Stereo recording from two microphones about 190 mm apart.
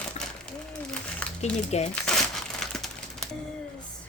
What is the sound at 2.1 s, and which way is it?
Crumpling, 5° left (ahead or behind).